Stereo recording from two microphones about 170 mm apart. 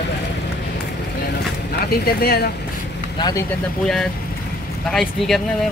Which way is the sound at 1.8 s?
65° left (ahead or behind).